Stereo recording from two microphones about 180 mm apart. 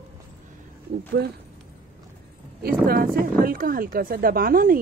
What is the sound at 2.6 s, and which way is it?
Speech, 55° right (ahead or behind).